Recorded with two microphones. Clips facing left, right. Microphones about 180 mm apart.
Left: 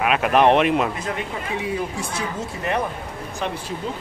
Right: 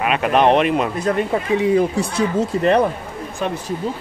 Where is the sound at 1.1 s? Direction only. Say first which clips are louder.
Right 9 dB; 55° right (ahead or behind).